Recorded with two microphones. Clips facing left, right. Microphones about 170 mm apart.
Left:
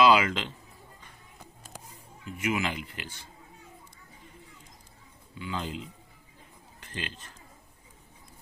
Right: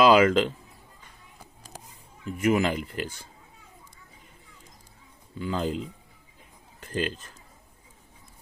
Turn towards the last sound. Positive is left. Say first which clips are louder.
# right 10 dB
turn(degrees=-40)  # may be behind; listen again after turning